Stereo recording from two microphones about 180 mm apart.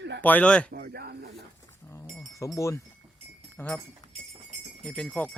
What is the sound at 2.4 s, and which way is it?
Speech, 15° left (ahead or behind).